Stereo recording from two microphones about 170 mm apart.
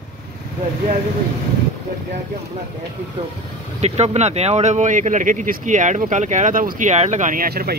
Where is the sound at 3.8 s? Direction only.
40° right (ahead or behind); by 7.7 s 60° right (ahead or behind).